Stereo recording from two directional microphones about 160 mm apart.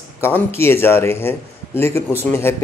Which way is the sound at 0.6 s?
15° left (ahead or behind).